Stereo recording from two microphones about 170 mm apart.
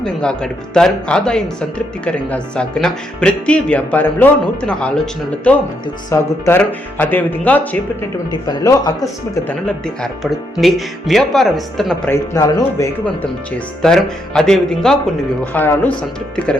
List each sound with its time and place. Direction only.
0.0 s speech: 5° left (ahead or behind)
8.3 s speech: 25° left (ahead or behind)
9.6 s speech: 5° left (ahead or behind)
12.1 s speech: 20° left (ahead or behind)
13.8 s speech: 5° left (ahead or behind)